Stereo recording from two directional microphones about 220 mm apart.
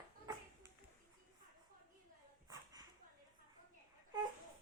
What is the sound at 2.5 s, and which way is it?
Dog, 15° right (ahead or behind).